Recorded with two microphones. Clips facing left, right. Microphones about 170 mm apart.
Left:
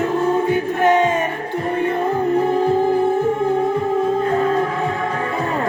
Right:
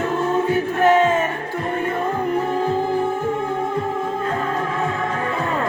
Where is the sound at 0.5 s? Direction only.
20° left (ahead or behind).